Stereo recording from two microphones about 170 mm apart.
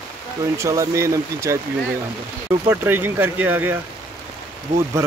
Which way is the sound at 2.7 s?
10° right (ahead or behind).